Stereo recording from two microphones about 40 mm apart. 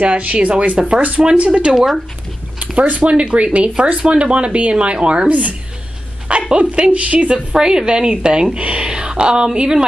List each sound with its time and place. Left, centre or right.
0.1 s a woman's voice: right
6.5 s a woman's voice: right
7.3 s speech: centre